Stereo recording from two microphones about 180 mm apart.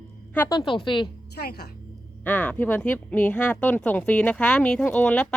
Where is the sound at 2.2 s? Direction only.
5° left (ahead or behind).